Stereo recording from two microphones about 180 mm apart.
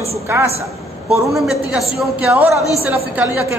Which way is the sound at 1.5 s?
Centre (ahead or behind).